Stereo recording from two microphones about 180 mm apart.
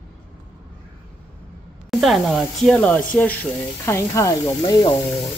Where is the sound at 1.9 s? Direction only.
Centre (ahead or behind).